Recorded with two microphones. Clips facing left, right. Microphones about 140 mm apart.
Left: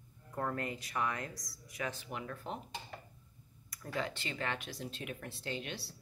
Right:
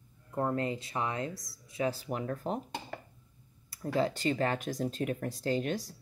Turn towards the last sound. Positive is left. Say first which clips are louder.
# right 10 dB
turn(degrees=-45)  # may be behind; listen again after turning